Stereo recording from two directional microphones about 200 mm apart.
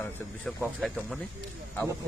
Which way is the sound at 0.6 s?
Centre (ahead or behind).